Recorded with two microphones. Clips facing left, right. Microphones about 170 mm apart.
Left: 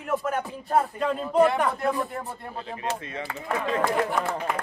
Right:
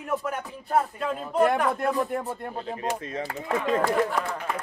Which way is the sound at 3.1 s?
40° right (ahead or behind).